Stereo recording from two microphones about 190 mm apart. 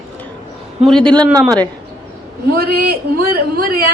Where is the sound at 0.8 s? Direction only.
5° left (ahead or behind).